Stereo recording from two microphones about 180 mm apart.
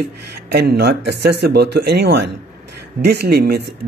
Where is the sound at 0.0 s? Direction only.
65° right (ahead or behind).